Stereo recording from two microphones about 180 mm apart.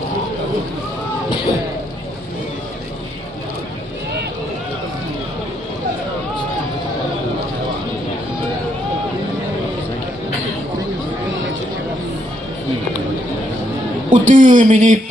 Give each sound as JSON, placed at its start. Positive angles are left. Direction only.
{"t": 14.1, "sound": "speech", "side_deg": -45}